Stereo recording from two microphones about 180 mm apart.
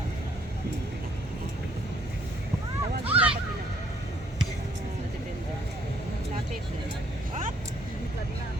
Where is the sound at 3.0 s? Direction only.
10° right (ahead or behind).